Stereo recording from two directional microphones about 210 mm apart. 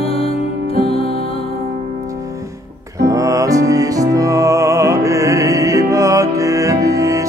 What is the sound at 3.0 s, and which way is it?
Music, 15° right (ahead or behind).